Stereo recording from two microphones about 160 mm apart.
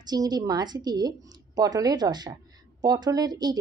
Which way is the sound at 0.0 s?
25° right (ahead or behind).